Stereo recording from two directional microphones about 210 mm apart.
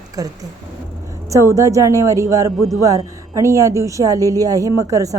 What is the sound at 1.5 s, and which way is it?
Speech, 15° right (ahead or behind).